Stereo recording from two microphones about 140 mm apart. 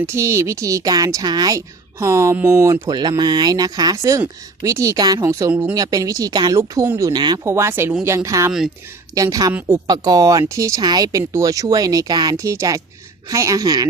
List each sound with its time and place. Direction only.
0.0 s a woman's voice: 20° right (ahead or behind)
6.6 s a woman's voice: 15° right (ahead or behind)
7.1 s speech: 30° right (ahead or behind)
7.5 s a woman's voice: 20° right (ahead or behind)
9.8 s a woman's voice: 30° right (ahead or behind)